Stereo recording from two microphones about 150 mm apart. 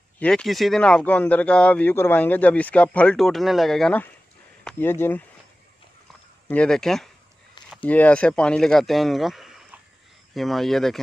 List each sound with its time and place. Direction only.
0.2 s speech: 5° left (ahead or behind)
6.4 s speech: 10° left (ahead or behind)